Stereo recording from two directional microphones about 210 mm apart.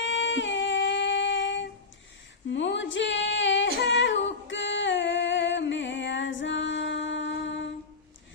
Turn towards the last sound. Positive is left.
turn(degrees=55)  # may be behind; listen again after turning